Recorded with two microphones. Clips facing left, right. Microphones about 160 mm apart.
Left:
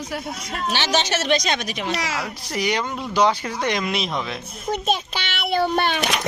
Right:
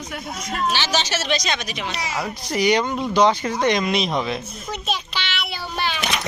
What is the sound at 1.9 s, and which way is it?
Speech, 90° left.